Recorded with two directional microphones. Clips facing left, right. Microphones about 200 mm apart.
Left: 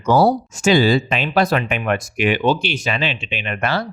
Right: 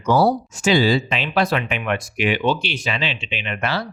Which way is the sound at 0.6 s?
45° left (ahead or behind).